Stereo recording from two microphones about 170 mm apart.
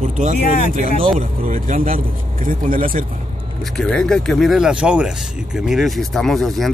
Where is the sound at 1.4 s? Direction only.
50° right (ahead or behind).